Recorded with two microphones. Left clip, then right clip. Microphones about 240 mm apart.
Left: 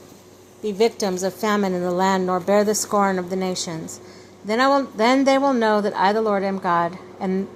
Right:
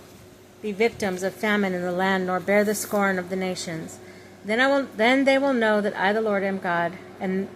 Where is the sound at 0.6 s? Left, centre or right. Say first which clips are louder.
Left 4 dB; centre.